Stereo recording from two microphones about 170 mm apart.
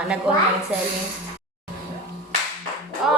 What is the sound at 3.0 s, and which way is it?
Speech, 5° right (ahead or behind).